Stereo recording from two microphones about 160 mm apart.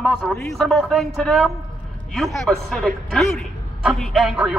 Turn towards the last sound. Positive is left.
turn(degrees=-5)  # may be behind; listen again after turning